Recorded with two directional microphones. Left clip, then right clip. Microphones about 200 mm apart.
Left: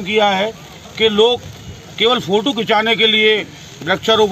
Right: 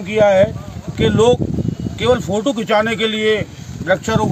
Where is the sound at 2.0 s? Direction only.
10° right (ahead or behind).